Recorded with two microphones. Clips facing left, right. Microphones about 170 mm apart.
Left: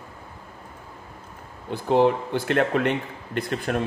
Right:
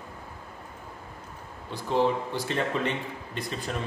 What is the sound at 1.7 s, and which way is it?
A man's voice, 60° left (ahead or behind).